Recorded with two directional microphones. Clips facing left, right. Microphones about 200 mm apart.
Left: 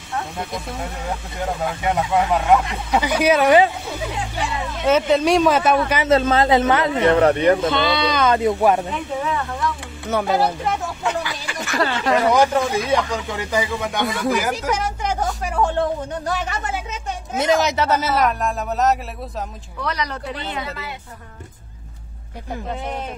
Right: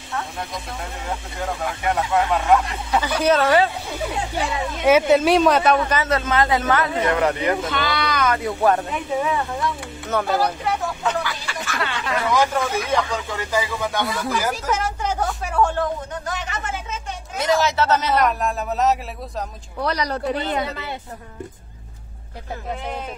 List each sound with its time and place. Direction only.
1.9 s speech: 10° left (ahead or behind)
4.8 s a man's voice: 10° right (ahead or behind); by 6.0 s 5° left (ahead or behind)
6.0 s speech: 25° left (ahead or behind)
9.2 s speech: 15° right (ahead or behind)
10.0 s speech: 10° left (ahead or behind)
11.1 s a sound: 15° left (ahead or behind)
12.4 s speech: 15° left (ahead or behind); by 16.5 s 35° left (ahead or behind)
17.4 s a man's voice: 20° left (ahead or behind); by 18.9 s centre (ahead or behind)
19.8 s speech: 35° right (ahead or behind)